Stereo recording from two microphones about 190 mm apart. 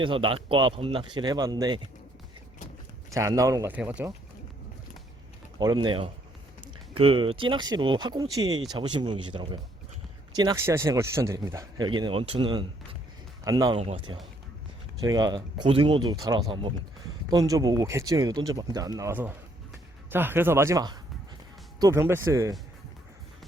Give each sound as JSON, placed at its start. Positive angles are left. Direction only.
{"t": 0.0, "sound": "speech", "side_deg": -25}
{"t": 3.2, "sound": "speech", "side_deg": -15}
{"t": 5.5, "sound": "speech", "side_deg": -20}
{"t": 13.7, "sound": "speech", "side_deg": -30}